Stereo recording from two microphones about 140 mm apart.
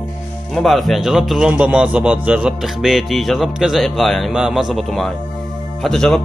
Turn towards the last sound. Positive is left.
turn(degrees=5)  # may be behind; listen again after turning